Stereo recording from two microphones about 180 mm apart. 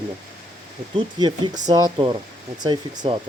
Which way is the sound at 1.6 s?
25° right (ahead or behind).